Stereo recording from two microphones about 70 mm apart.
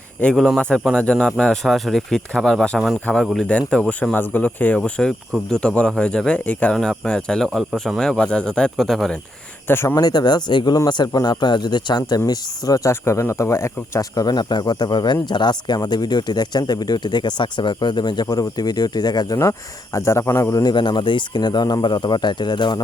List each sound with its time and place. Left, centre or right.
0.9 s speech: centre
2.7 s speech: centre
3.5 s speech: centre
4.8 s speech: centre
6.7 s speech: centre
9.6 s speech: left
9.9 s speech: left
12.9 s speech: left
14.2 s speech: left
19.4 s speech: left
20.6 s speech: left